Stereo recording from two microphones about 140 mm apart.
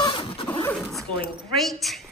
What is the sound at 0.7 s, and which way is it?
A woman's voice, 10° left (ahead or behind).